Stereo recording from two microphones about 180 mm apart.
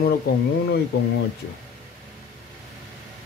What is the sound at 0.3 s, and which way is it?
Speech, 55° left (ahead or behind).